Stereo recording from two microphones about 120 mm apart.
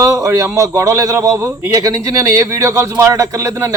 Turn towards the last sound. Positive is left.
turn(degrees=-25)  # may be behind; listen again after turning